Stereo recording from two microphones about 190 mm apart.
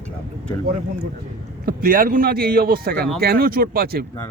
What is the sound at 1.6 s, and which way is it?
A man's voice, 50° right (ahead or behind).